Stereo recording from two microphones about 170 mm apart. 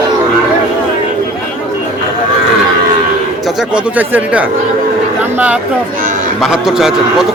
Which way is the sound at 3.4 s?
10° right (ahead or behind).